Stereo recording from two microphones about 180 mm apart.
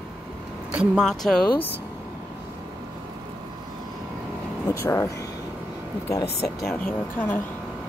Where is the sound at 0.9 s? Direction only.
Centre (ahead or behind).